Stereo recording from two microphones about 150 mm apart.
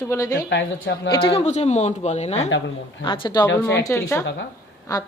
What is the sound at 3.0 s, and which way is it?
A woman's voice, 35° left (ahead or behind).